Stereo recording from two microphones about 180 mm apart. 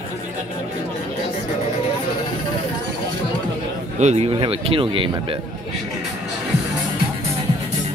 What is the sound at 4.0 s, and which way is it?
Speech, 40° right (ahead or behind).